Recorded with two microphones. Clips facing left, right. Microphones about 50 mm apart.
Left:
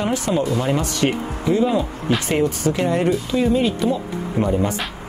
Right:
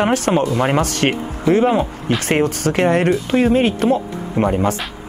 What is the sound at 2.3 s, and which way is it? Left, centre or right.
Speech, right.